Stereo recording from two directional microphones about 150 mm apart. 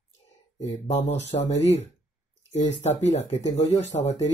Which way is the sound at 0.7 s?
50° left (ahead or behind).